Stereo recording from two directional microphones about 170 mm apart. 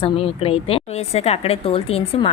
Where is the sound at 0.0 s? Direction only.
35° left (ahead or behind).